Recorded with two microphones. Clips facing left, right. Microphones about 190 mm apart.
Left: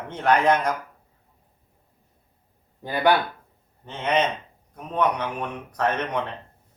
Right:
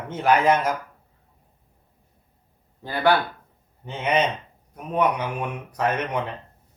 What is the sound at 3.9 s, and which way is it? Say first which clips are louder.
Speech: right 1 dB; 10° right (ahead or behind).